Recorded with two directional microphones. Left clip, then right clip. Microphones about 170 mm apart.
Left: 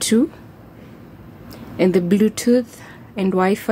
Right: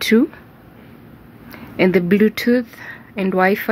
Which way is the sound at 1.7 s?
5° right (ahead or behind).